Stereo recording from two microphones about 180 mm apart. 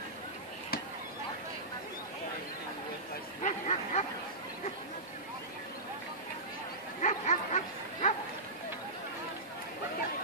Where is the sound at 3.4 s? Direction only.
40° left (ahead or behind).